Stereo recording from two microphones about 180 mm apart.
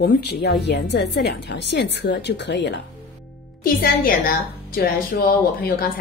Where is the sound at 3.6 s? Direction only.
55° left (ahead or behind).